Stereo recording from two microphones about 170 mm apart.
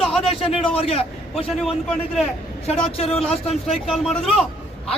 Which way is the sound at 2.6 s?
35° left (ahead or behind).